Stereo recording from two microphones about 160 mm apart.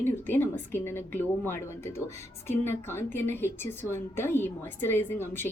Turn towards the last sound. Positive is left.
turn(degrees=10)  # may be behind; listen again after turning